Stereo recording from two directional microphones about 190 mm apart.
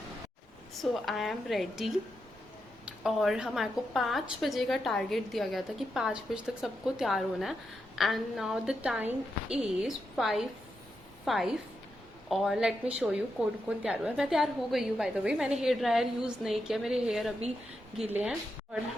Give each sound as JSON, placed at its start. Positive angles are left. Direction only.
{"t": 0.8, "sound": "a woman's voice", "side_deg": 0}